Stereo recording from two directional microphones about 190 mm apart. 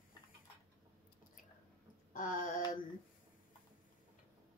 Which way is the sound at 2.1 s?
45° left (ahead or behind).